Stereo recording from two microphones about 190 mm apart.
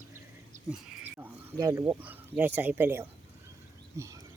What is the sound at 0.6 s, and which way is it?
Speech, 10° right (ahead or behind).